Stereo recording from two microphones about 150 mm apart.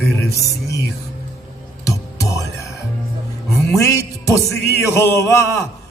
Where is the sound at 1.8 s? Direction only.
20° left (ahead or behind).